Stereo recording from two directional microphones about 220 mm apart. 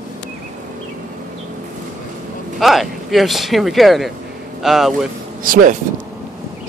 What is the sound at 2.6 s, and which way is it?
Speech, centre (ahead or behind).